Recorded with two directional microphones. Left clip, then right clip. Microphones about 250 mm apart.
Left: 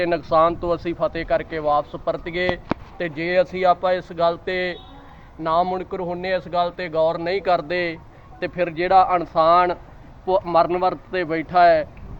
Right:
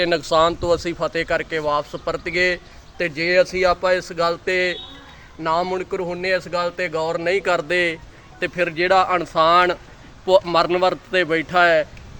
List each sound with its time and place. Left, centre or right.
0.0 s speech: right